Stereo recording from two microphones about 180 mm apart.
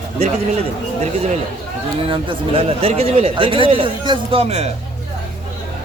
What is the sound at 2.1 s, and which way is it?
Speech, 30° right (ahead or behind).